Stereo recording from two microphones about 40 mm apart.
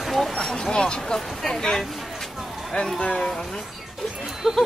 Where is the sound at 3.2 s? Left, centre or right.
Centre.